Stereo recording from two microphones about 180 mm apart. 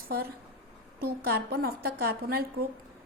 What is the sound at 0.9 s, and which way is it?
A woman's voice, 55° right (ahead or behind).